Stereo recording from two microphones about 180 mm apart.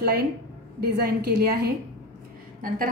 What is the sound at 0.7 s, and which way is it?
A woman's voice, 60° right (ahead or behind).